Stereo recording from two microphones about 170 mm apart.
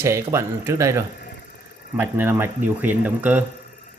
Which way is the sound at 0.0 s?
15° right (ahead or behind).